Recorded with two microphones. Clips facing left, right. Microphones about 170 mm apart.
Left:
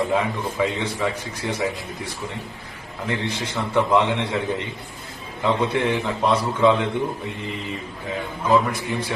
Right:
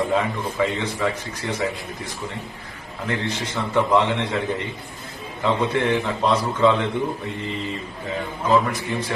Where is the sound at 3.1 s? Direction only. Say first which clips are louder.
Even; 15° left (ahead or behind).